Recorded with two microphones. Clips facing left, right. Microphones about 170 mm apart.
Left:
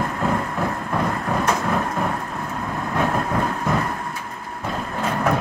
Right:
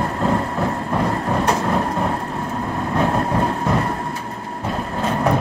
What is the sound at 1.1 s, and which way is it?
Vehicle, 30° right (ahead or behind).